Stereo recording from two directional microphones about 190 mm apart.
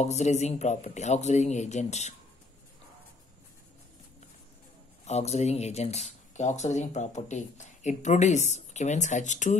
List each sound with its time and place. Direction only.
0.0 s speech: 35° left (ahead or behind)
5.0 s speech: 35° left (ahead or behind)